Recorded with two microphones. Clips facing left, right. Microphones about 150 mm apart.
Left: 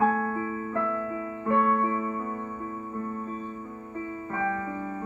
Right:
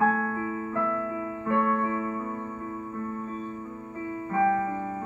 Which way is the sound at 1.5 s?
15° left (ahead or behind).